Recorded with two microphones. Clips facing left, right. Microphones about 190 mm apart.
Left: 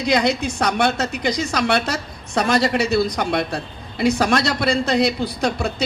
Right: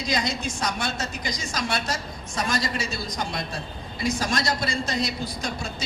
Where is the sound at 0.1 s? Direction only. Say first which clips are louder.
Left 9 dB; 65° left (ahead or behind).